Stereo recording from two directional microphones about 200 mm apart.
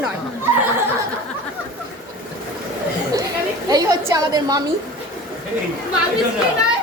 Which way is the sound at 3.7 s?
20° right (ahead or behind).